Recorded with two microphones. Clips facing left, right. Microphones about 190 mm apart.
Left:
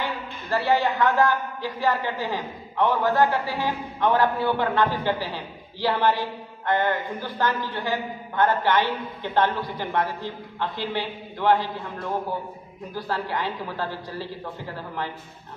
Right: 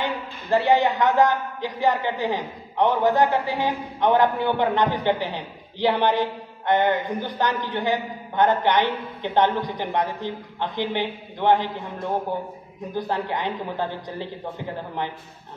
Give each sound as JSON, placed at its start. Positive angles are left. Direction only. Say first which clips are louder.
{"t": 0.0, "sound": "a woman's voice", "louder": "right 2 dB", "side_deg": -20}